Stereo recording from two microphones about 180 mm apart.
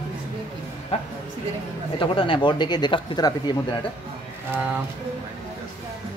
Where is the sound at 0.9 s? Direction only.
35° left (ahead or behind).